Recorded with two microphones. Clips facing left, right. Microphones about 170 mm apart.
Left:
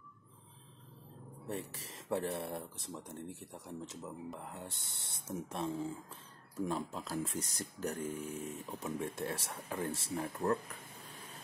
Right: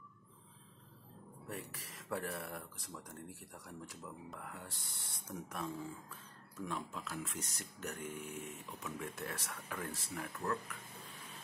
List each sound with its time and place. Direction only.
1.5 s speech: 30° left (ahead or behind)